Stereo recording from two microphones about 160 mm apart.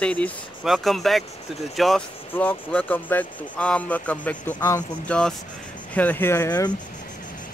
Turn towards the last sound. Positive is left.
turn(degrees=20)  # may be behind; listen again after turning